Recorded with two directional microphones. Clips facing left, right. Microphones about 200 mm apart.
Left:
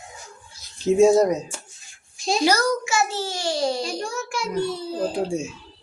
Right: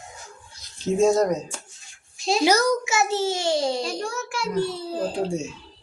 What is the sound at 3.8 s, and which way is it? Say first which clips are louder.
A child's voice: even; centre (ahead or behind).